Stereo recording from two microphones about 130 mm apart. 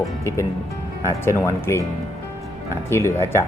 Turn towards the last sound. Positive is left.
turn(degrees=20)  # may be behind; listen again after turning